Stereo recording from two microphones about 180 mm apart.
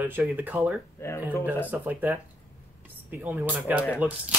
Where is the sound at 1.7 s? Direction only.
10° right (ahead or behind).